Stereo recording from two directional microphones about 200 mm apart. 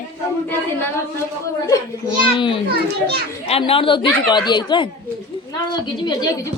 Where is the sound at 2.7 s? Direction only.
50° right (ahead or behind).